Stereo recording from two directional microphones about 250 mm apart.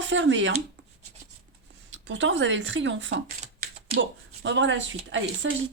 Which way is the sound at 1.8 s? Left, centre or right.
Right.